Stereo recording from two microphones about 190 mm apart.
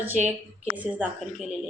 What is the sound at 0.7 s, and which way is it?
Speech, 5° right (ahead or behind).